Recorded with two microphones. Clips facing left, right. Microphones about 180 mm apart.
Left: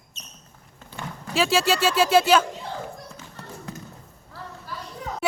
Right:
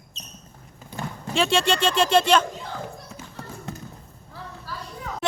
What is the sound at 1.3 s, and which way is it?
Speech, 5° left (ahead or behind).